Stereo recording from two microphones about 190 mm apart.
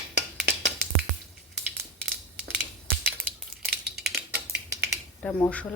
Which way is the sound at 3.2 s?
50° right (ahead or behind).